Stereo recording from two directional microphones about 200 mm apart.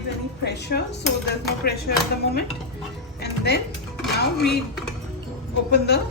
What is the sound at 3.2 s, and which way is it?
Music, 55° left (ahead or behind).